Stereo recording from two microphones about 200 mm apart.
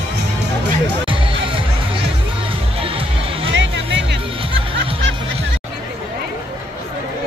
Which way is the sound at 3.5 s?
65° right (ahead or behind).